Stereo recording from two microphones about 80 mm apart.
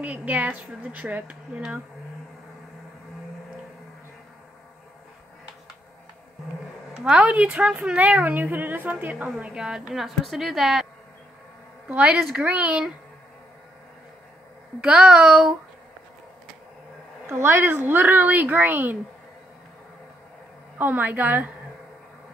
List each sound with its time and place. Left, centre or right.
0.0 s speech: centre
6.9 s a woman's voice: centre
9.4 s a woman's voice: centre
11.9 s a woman's voice: centre
14.8 s a woman's voice: centre
17.3 s speech: right
20.7 s speech: right